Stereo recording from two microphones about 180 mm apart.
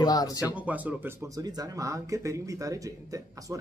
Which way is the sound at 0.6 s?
10° right (ahead or behind).